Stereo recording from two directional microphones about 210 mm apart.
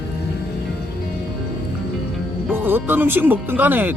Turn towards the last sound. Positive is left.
turn(degrees=-10)  # may be behind; listen again after turning